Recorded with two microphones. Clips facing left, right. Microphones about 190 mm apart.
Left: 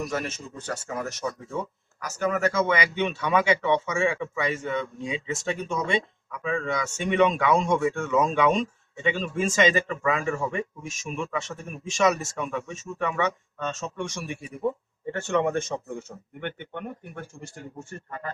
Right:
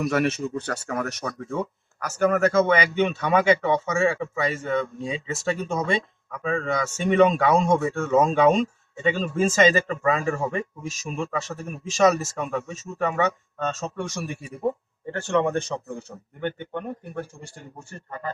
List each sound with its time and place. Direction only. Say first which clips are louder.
0.0 s speech: right 7 dB; 65° right (ahead or behind); by 17.2 s 40° right (ahead or behind)